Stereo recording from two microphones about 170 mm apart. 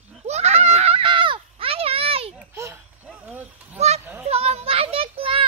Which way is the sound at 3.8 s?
40° right (ahead or behind).